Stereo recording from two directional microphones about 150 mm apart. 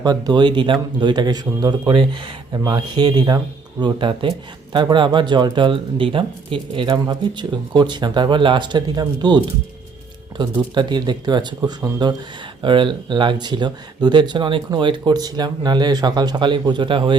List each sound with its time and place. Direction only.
0.0 s speech: 25° right (ahead or behind)